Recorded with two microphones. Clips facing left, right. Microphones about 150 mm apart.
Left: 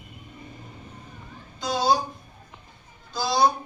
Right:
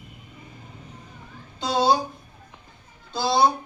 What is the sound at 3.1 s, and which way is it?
Speech, 25° right (ahead or behind).